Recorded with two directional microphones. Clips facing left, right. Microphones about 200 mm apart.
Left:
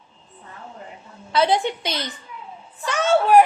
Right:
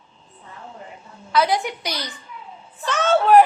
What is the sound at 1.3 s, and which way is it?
Speech, 25° left (ahead or behind).